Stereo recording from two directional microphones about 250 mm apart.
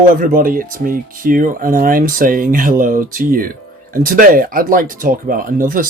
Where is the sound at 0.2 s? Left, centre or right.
Right.